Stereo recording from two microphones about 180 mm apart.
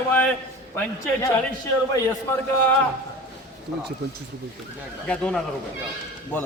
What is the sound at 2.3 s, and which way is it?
Speech, 15° left (ahead or behind).